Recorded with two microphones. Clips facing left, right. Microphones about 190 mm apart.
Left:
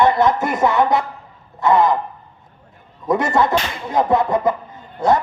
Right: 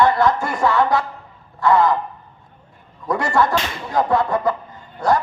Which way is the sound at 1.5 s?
20° left (ahead or behind).